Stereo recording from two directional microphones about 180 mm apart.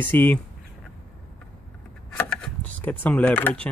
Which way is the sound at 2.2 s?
10° left (ahead or behind).